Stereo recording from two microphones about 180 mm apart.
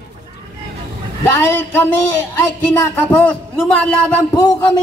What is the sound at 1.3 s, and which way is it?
Speech, 15° left (ahead or behind).